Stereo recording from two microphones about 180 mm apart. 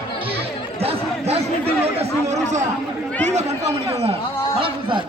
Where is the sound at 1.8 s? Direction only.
35° right (ahead or behind).